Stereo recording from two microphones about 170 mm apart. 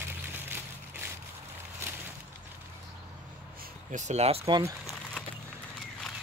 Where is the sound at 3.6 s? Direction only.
45° right (ahead or behind); by 4.7 s 25° right (ahead or behind).